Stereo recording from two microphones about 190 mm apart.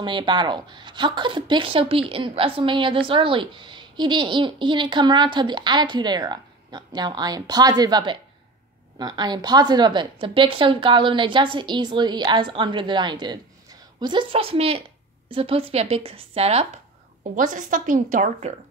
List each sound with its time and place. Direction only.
0.0 s a woman's voice: 25° right (ahead or behind); by 18.5 s 40° right (ahead or behind)